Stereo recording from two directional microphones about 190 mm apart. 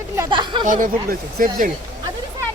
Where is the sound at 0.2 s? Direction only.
25° right (ahead or behind).